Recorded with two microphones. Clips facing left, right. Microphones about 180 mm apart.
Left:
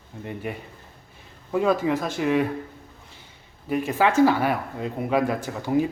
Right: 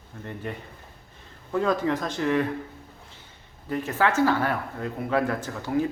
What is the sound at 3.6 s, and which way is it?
Speech, 15° left (ahead or behind).